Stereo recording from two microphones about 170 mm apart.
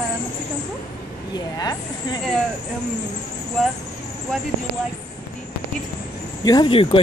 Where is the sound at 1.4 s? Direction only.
25° left (ahead or behind).